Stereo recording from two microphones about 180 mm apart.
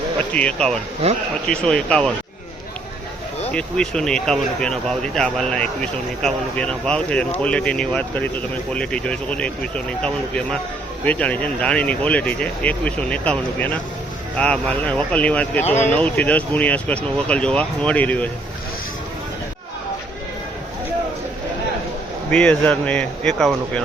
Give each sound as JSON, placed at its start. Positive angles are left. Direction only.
{"t": 0.3, "sound": "speech", "side_deg": 5}
{"t": 3.5, "sound": "speech", "side_deg": 5}
{"t": 15.6, "sound": "speech", "side_deg": 40}
{"t": 15.9, "sound": "speech", "side_deg": 10}
{"t": 22.3, "sound": "speech", "side_deg": 5}